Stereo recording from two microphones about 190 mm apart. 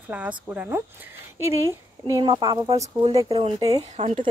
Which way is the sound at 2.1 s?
25° right (ahead or behind).